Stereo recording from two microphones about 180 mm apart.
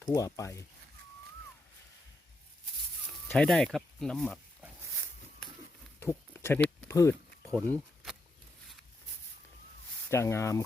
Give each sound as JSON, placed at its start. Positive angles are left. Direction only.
{"t": 0.0, "sound": "speech", "side_deg": 20}
{"t": 3.2, "sound": "speech", "side_deg": 5}
{"t": 6.0, "sound": "a sound", "side_deg": 15}
{"t": 10.1, "sound": "speech", "side_deg": 15}